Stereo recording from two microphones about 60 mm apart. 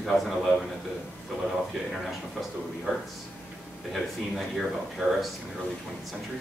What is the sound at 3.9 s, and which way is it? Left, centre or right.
Speech, centre.